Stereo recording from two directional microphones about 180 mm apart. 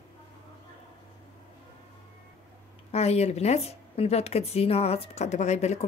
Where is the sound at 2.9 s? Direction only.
35° left (ahead or behind).